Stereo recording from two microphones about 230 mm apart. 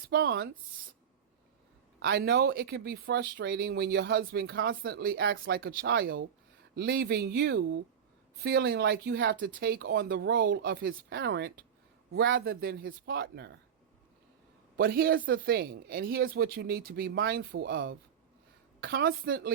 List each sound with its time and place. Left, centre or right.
0.1 s speech: right
2.0 s speech: right
14.8 s speech: right